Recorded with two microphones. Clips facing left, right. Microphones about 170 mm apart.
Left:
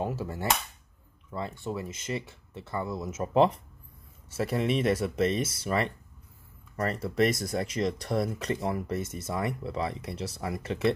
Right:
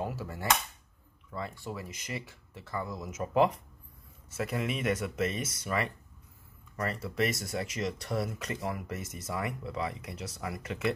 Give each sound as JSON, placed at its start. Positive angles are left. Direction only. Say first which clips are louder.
{"t": 0.0, "sound": "speech", "louder": "left 4 dB", "side_deg": 25}